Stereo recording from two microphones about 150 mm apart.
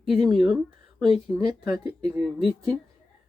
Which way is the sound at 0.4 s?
Centre (ahead or behind).